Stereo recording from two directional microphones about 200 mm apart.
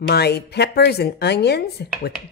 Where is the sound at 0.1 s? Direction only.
55° left (ahead or behind).